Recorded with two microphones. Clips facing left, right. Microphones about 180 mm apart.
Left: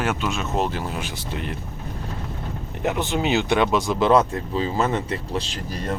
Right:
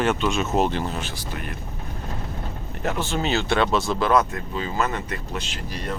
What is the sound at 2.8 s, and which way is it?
Speech, 15° left (ahead or behind).